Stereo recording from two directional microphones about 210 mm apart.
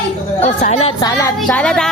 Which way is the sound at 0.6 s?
30° left (ahead or behind).